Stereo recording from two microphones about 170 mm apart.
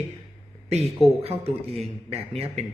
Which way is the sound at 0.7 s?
40° right (ahead or behind).